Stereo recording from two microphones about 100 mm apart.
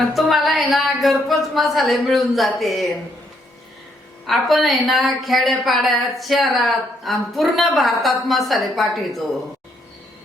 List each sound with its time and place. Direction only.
0.1 s a woman's voice: centre (ahead or behind)
4.3 s a woman's voice: centre (ahead or behind)